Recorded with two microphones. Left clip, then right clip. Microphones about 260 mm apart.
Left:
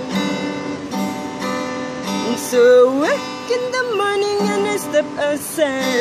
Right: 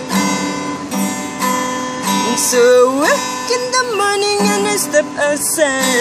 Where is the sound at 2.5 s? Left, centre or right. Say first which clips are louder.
Right 1 dB; centre.